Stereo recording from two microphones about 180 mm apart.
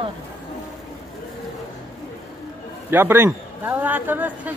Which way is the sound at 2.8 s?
10° right (ahead or behind).